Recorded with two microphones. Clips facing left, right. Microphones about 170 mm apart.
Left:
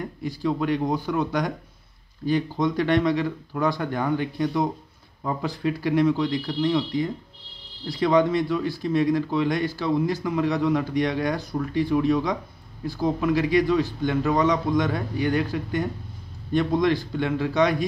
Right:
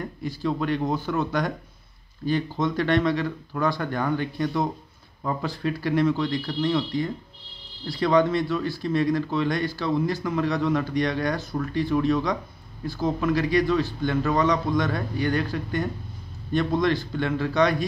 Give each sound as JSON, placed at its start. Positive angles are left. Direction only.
{"t": 0.0, "sound": "a man's voice", "side_deg": 15}